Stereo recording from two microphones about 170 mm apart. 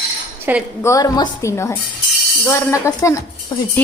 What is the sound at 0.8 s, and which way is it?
A woman's voice, 20° left (ahead or behind).